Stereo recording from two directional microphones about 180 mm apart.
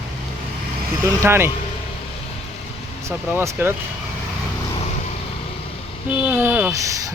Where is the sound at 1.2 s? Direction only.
15° right (ahead or behind).